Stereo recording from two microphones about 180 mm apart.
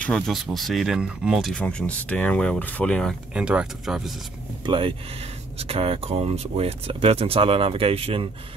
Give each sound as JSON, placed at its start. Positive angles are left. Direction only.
{"t": 0.0, "sound": "speech", "side_deg": 5}
{"t": 4.6, "sound": "speech", "side_deg": -30}